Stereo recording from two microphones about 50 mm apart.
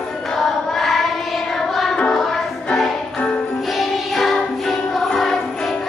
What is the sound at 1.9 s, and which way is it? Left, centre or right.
Music, centre.